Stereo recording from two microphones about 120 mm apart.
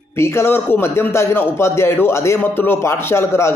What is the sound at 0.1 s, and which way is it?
A man's voice, 20° left (ahead or behind).